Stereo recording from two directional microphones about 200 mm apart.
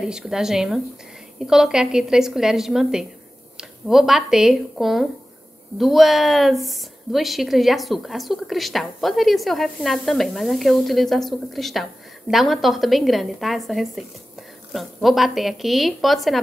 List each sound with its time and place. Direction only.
0.1 s a woman's voice: 5° right (ahead or behind)